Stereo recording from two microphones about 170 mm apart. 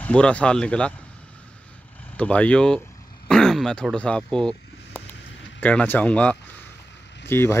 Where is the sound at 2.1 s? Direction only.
5° left (ahead or behind).